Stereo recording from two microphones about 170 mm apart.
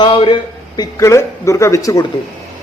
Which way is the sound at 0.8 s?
20° left (ahead or behind).